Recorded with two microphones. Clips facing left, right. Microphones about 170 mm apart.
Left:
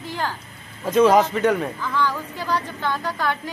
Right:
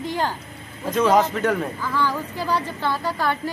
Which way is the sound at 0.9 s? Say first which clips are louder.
Left 3 dB; 5° left (ahead or behind).